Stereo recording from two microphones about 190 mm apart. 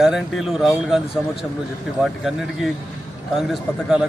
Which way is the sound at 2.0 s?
Centre (ahead or behind).